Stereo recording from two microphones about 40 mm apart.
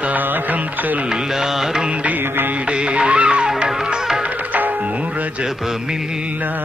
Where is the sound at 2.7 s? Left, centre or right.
Right.